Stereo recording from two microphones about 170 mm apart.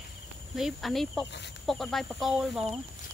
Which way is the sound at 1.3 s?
90° left.